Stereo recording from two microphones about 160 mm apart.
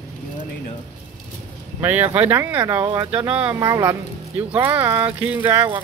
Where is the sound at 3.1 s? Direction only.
10° right (ahead or behind).